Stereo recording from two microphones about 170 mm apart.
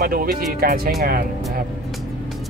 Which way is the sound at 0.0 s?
60° right (ahead or behind).